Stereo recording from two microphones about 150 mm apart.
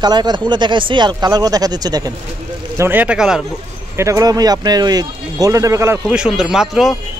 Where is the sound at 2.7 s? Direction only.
15° right (ahead or behind).